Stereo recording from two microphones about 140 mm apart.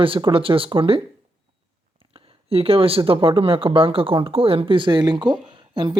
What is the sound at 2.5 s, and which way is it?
Speech, 45° right (ahead or behind).